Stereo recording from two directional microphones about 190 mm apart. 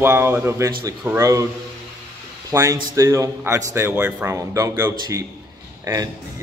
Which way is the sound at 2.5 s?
15° right (ahead or behind).